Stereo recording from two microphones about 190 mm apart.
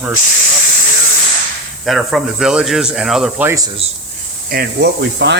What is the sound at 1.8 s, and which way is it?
Speech, centre (ahead or behind).